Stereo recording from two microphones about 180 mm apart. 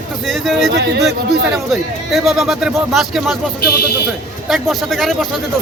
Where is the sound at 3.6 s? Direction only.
60° left (ahead or behind).